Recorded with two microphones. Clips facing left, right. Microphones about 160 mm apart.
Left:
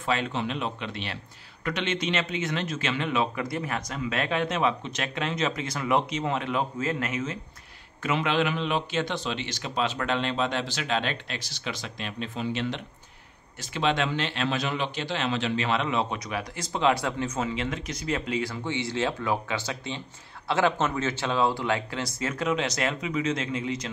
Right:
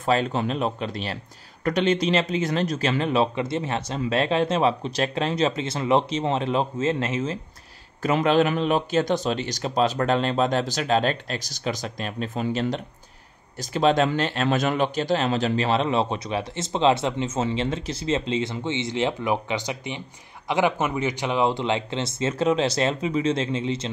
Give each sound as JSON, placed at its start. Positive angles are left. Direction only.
{"t": 0.0, "sound": "speech", "side_deg": -40}
{"t": 8.0, "sound": "speech", "side_deg": -40}